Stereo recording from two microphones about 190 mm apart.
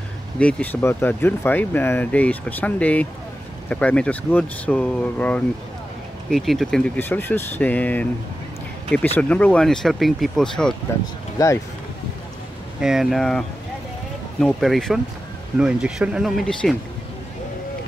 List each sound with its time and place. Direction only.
0.4 s speech: 5° left (ahead or behind)
11.3 s speech: 15° left (ahead or behind)
12.8 s speech: centre (ahead or behind)